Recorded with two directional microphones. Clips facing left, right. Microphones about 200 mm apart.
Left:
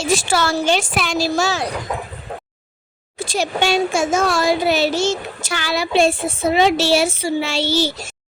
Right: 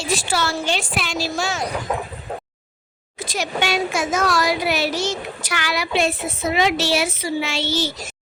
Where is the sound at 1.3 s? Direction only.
35° left (ahead or behind).